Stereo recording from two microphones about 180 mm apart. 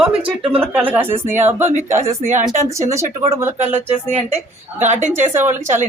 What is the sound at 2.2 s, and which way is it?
Speech, 40° right (ahead or behind).